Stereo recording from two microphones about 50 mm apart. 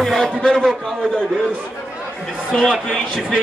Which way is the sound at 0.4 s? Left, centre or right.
Centre.